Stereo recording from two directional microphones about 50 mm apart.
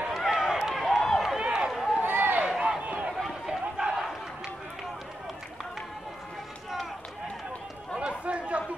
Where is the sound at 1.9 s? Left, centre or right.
Right.